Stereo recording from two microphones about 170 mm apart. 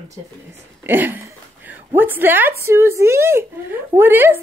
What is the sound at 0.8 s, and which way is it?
A woman's voice, 10° right (ahead or behind).